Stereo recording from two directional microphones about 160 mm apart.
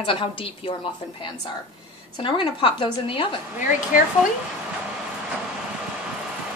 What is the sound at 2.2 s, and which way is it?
A woman's voice, 30° left (ahead or behind).